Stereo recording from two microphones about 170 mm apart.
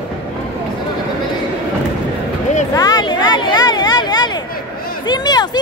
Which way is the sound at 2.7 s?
20° left (ahead or behind).